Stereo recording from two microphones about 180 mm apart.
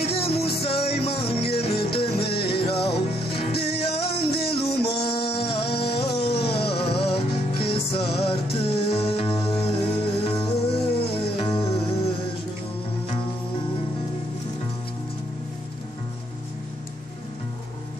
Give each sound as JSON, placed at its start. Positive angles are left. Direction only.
{"t": 0.0, "sound": "music", "side_deg": 30}
{"t": 2.3, "sound": "music", "side_deg": 65}
{"t": 2.6, "sound": "music", "side_deg": 30}
{"t": 4.0, "sound": "music", "side_deg": 60}
{"t": 4.5, "sound": "music", "side_deg": 30}
{"t": 5.8, "sound": "a sound", "side_deg": 30}
{"t": 6.1, "sound": "music", "side_deg": 30}